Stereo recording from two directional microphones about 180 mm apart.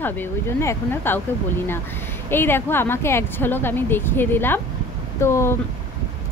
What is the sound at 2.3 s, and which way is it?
Speech, 10° left (ahead or behind).